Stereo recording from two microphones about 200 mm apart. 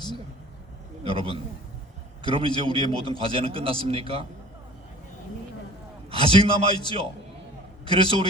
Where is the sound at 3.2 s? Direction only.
25° right (ahead or behind).